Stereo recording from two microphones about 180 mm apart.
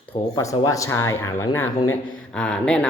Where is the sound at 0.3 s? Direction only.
20° left (ahead or behind).